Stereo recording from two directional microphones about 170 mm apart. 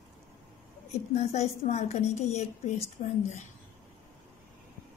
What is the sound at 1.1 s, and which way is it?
A woman's voice, 40° left (ahead or behind).